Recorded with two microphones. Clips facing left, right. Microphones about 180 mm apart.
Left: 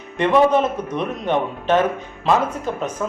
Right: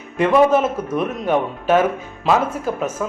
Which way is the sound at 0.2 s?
5° right (ahead or behind).